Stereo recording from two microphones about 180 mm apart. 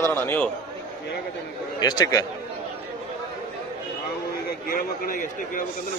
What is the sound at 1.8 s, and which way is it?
Speech, 20° left (ahead or behind).